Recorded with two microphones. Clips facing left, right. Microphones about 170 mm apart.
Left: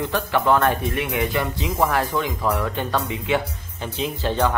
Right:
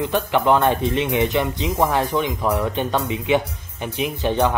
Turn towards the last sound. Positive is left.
turn(degrees=-15)  # may be behind; listen again after turning